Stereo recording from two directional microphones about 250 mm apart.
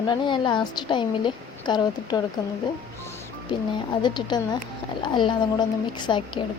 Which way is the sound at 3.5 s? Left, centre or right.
Centre.